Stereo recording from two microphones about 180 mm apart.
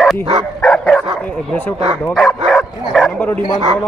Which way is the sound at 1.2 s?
10° left (ahead or behind).